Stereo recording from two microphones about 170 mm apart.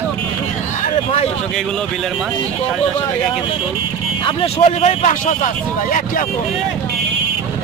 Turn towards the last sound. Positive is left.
turn(degrees=50)  # may be behind; listen again after turning